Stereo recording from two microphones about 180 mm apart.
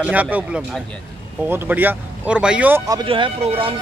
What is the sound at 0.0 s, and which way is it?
Speech, 10° right (ahead or behind).